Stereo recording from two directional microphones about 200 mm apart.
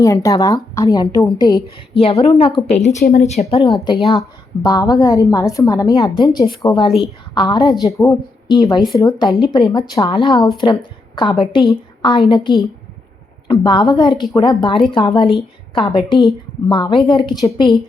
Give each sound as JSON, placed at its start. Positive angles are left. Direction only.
{"t": 0.0, "sound": "a woman's voice", "side_deg": 15}
{"t": 3.0, "sound": "speech", "side_deg": 50}
{"t": 3.2, "sound": "a woman's voice", "side_deg": 30}